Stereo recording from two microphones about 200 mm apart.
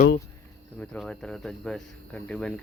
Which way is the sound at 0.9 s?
5° left (ahead or behind).